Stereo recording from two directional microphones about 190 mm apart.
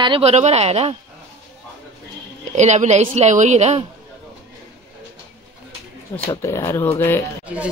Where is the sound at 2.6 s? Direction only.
35° right (ahead or behind).